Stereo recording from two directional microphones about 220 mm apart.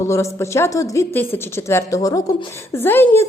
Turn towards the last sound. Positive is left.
turn(degrees=10)  # may be behind; listen again after turning